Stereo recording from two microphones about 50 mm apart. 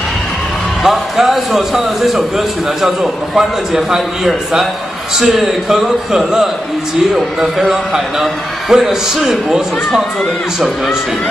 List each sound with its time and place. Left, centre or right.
0.8 s a man's voice: centre